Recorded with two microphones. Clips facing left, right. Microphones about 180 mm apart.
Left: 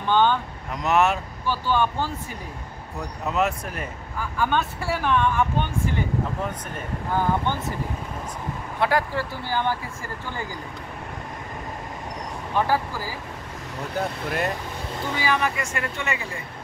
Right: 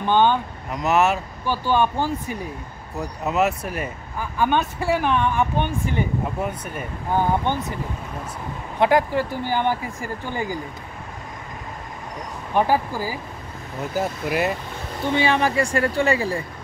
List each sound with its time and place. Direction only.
0.0 s speech: 15° right (ahead or behind)
0.7 s speech: 5° right (ahead or behind)
1.4 s speech: 15° right (ahead or behind)
4.2 s speech: 15° right (ahead or behind)
8.7 s speech: 20° right (ahead or behind)
12.5 s speech: 15° right (ahead or behind)
13.9 s speech: 5° right (ahead or behind)
15.1 s speech: 30° right (ahead or behind)